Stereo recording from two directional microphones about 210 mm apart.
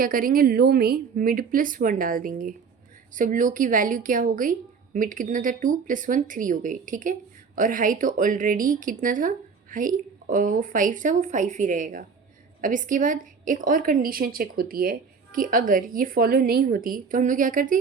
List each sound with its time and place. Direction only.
0.0 s speech: 40° right (ahead or behind)